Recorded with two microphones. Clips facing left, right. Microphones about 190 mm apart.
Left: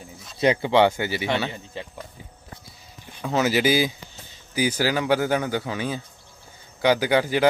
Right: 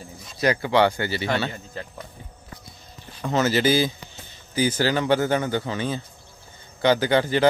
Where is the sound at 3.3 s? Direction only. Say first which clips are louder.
Even; 10° left (ahead or behind).